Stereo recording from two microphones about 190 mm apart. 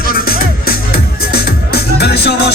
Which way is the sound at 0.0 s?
50° left (ahead or behind).